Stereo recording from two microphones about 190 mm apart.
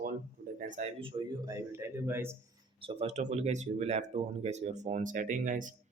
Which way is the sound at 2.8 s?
30° right (ahead or behind).